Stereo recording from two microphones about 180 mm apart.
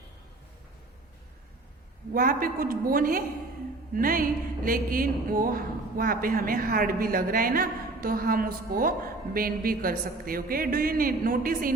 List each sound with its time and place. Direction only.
2.1 s music: 50° right (ahead or behind)